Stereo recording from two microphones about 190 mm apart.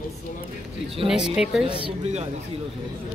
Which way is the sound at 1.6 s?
25° right (ahead or behind).